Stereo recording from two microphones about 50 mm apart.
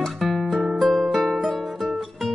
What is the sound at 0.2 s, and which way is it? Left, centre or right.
Music, centre.